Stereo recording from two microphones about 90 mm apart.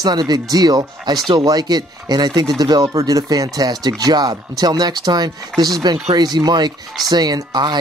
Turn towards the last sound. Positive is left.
turn(degrees=-55)  # may be behind; listen again after turning